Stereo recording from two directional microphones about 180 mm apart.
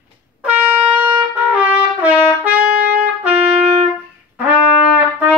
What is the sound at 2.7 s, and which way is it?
Trumpet, 55° right (ahead or behind).